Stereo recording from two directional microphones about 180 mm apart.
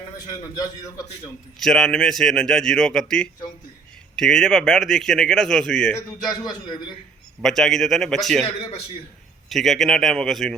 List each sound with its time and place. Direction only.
1.5 s a man's voice: centre (ahead or behind)
6.2 s a man's voice: 20° left (ahead or behind)
7.4 s a man's voice: centre (ahead or behind)
9.5 s a man's voice: centre (ahead or behind)